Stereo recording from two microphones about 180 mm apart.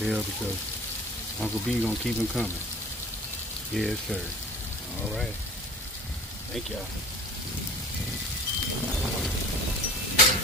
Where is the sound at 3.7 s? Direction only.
Centre (ahead or behind).